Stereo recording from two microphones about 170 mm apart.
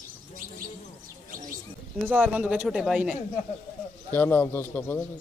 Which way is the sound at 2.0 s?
10° right (ahead or behind).